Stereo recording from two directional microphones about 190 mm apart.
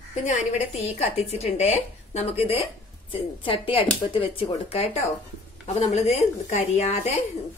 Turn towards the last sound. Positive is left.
turn(degrees=35)  # may be behind; listen again after turning